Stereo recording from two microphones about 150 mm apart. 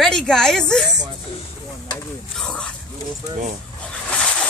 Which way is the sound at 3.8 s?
10° left (ahead or behind).